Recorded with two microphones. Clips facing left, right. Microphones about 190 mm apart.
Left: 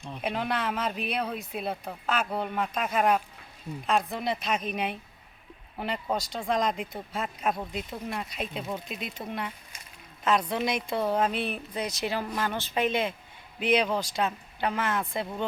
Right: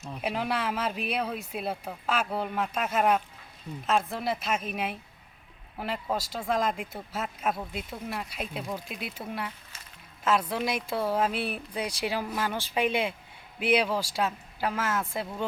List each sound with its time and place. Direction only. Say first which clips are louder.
0.0 s a woman's voice: even; 5° right (ahead or behind)